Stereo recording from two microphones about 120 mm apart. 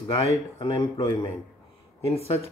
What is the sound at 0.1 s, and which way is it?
Speech, 55° left (ahead or behind).